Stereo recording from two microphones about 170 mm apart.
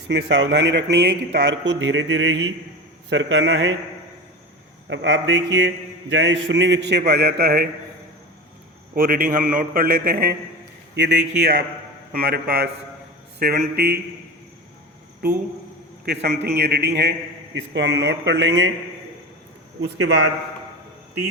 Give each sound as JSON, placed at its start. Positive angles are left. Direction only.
{"t": 0.1, "sound": "a man's voice", "side_deg": -90}
{"t": 4.9, "sound": "a man's voice", "side_deg": -90}
{"t": 9.0, "sound": "a man's voice", "side_deg": -60}
{"t": 10.9, "sound": "speech", "side_deg": -85}
{"t": 12.1, "sound": "a man's voice", "side_deg": -65}
{"t": 16.0, "sound": "a man's voice", "side_deg": -75}
{"t": 17.5, "sound": "a man's voice", "side_deg": -90}
{"t": 20.0, "sound": "a man's voice", "side_deg": -90}